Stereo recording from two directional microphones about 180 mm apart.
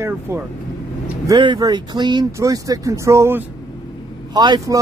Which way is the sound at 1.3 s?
25° right (ahead or behind).